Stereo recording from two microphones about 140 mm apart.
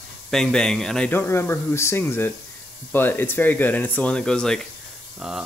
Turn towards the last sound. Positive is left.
turn(degrees=-5)  # may be behind; listen again after turning